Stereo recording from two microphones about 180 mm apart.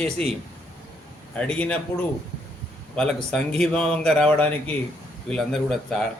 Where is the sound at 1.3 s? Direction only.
5° left (ahead or behind).